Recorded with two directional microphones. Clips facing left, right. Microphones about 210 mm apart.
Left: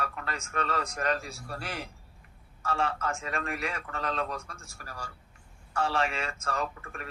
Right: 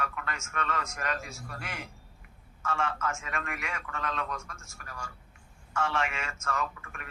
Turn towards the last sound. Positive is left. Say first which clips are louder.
# left 2 dB
turn(degrees=35)  # may be behind; listen again after turning